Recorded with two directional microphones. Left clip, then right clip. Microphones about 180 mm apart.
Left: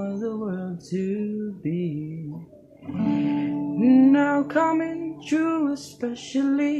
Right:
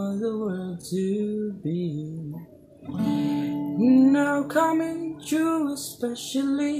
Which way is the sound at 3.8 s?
25° right (ahead or behind).